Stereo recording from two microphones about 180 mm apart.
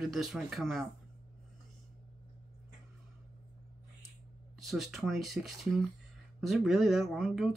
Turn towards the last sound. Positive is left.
turn(degrees=0)  # may be behind; listen again after turning